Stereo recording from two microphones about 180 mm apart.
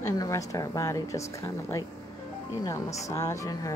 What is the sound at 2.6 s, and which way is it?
A woman's voice, 20° left (ahead or behind).